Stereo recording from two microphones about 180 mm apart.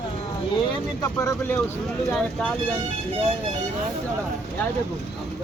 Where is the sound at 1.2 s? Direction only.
10° left (ahead or behind).